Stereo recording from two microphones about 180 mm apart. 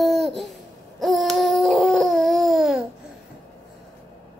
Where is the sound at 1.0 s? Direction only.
Centre (ahead or behind).